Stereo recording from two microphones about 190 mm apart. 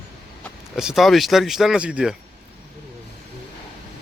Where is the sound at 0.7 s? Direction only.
Centre (ahead or behind).